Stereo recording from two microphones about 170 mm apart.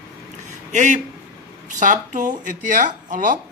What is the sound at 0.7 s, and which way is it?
Speech, 45° right (ahead or behind).